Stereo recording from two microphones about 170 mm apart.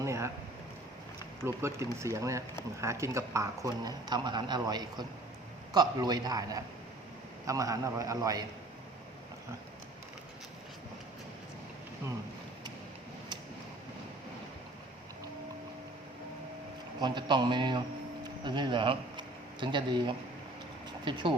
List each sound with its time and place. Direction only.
0.0 s a sound: 15° right (ahead or behind)
1.4 s a man's voice: 15° right (ahead or behind)
17.0 s a man's voice: 25° right (ahead or behind)